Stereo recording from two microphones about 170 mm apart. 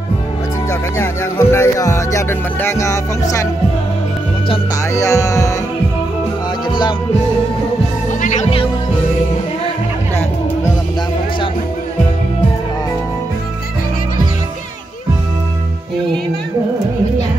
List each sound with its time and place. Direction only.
0.7 s speech: 15° left (ahead or behind)
4.9 s music: 20° left (ahead or behind)
8.2 s music: 45° left (ahead or behind)